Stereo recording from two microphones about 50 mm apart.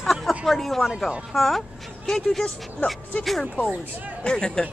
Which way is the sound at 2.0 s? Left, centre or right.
Centre.